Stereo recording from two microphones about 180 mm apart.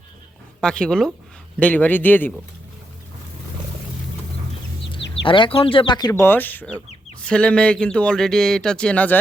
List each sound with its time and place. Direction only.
0.6 s chicken: 5° left (ahead or behind)
1.5 s speech: 10° left (ahead or behind)
4.9 s speech: 30° left (ahead or behind)
6.1 s speech: 10° left (ahead or behind)
6.7 s chicken: 5° left (ahead or behind)